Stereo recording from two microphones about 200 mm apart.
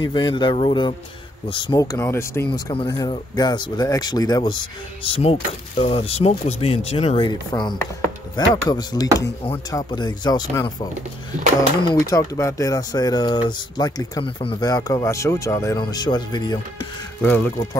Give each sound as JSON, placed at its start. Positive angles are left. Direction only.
{"t": 0.0, "sound": "speech", "side_deg": 25}
{"t": 11.9, "sound": "speech", "side_deg": 15}
{"t": 17.2, "sound": "speech", "side_deg": 10}